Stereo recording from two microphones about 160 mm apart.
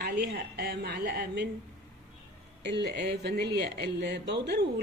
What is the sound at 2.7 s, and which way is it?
Speech, 90° right.